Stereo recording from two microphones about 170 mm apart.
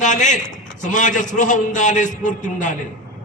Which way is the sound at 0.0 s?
45° left (ahead or behind).